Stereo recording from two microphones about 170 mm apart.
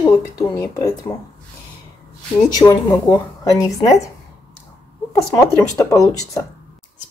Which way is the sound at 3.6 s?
20° left (ahead or behind).